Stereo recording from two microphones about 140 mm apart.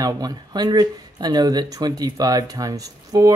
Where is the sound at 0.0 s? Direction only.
25° right (ahead or behind).